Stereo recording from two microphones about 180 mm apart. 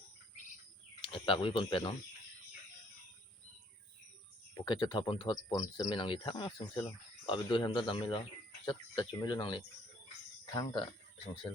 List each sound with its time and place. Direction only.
1.0 s speech: 25° left (ahead or behind)
4.6 s speech: 25° left (ahead or behind)